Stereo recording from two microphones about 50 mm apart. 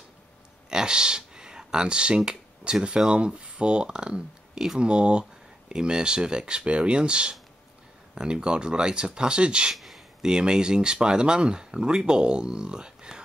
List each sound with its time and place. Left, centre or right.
0.7 s speech: centre
9.7 s a sound: centre
10.2 s speech: centre